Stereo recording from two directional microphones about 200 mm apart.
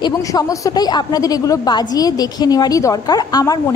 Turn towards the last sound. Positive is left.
turn(degrees=20)  # may be behind; listen again after turning